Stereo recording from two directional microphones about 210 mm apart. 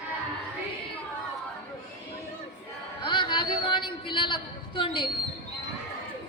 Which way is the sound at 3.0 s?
20° left (ahead or behind).